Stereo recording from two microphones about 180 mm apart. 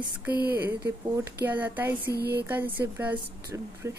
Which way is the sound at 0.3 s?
60° right (ahead or behind).